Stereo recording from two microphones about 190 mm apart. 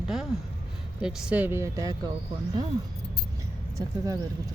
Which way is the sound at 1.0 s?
5° right (ahead or behind).